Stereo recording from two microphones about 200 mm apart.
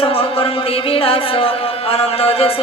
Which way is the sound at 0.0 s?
30° left (ahead or behind).